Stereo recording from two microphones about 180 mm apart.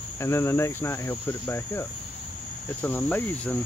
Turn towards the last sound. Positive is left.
turn(degrees=10)  # may be behind; listen again after turning